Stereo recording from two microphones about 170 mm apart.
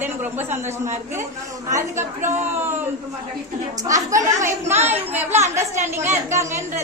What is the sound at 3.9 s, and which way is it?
Speech, 20° right (ahead or behind).